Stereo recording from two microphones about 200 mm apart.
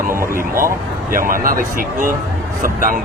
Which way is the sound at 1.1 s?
45° right (ahead or behind).